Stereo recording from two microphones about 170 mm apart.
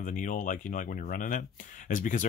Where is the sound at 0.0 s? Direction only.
50° left (ahead or behind).